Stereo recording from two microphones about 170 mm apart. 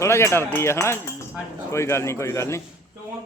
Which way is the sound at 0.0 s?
15° left (ahead or behind).